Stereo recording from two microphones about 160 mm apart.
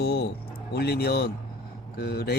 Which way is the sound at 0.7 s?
90° left.